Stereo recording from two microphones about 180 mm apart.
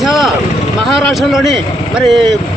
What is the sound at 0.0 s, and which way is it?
Vehicle, centre (ahead or behind).